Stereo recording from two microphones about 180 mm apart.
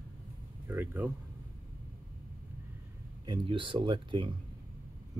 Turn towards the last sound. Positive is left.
turn(degrees=-25)  # may be behind; listen again after turning